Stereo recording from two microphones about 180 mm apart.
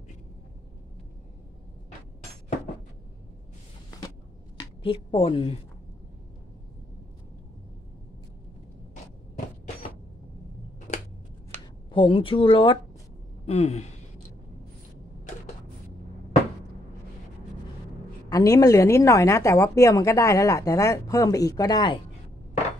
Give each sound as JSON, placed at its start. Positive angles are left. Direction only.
{"t": 4.6, "sound": "a woman's voice", "side_deg": 30}
{"t": 11.9, "sound": "speech", "side_deg": 30}
{"t": 18.3, "sound": "a woman's voice", "side_deg": 20}